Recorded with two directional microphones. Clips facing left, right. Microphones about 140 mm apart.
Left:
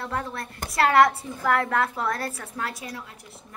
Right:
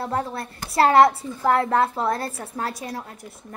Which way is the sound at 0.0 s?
30° right (ahead or behind).